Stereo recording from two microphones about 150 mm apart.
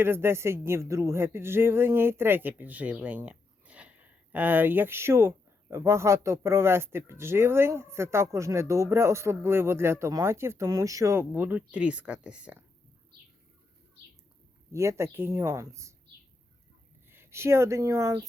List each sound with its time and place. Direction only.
0.0 s speech: 15° right (ahead or behind)
14.7 s speech: 20° right (ahead or behind)
17.1 s speech: 15° right (ahead or behind)